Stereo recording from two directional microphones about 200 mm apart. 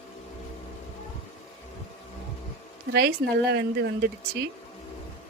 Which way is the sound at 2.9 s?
55° right (ahead or behind).